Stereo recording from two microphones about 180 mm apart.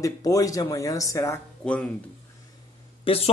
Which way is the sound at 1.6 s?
5° left (ahead or behind).